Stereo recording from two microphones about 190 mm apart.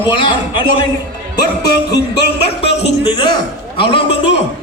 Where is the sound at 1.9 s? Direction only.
60° left (ahead or behind).